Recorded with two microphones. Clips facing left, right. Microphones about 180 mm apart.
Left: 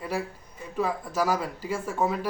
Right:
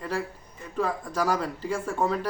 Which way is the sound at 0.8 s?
10° left (ahead or behind).